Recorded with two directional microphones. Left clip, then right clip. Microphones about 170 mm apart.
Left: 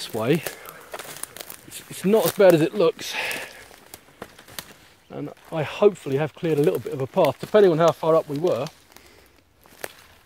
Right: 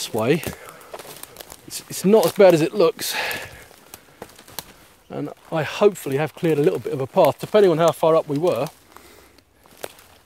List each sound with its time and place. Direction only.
0.0 s speech: 30° right (ahead or behind)
0.9 s crumpling: centre (ahead or behind)
1.7 s a sound: 90° right
2.0 s speech: 30° right (ahead or behind)
5.1 s speech: 40° right (ahead or behind)